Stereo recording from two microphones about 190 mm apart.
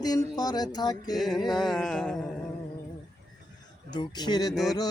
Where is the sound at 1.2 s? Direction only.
Centre (ahead or behind).